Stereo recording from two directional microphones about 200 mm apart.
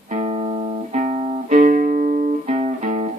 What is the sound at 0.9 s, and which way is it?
Music, 40° right (ahead or behind).